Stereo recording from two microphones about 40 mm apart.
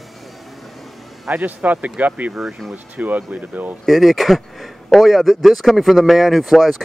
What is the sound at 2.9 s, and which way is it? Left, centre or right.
Speech, right.